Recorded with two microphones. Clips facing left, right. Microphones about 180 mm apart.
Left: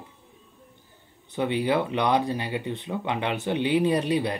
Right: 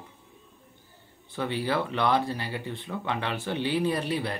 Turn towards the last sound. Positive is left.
turn(degrees=20)  # may be behind; listen again after turning